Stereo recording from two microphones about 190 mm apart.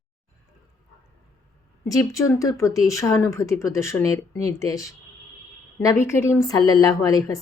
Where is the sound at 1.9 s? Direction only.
20° left (ahead or behind).